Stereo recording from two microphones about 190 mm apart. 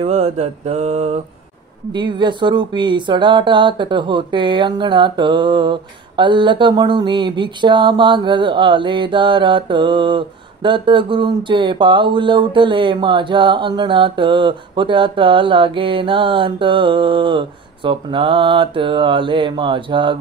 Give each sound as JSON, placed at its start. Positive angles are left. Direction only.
{"t": 0.0, "sound": "mantra", "side_deg": -35}
{"t": 1.9, "sound": "speech", "side_deg": -25}